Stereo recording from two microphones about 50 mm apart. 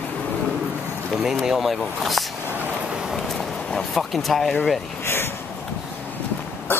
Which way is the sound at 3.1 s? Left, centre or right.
Centre.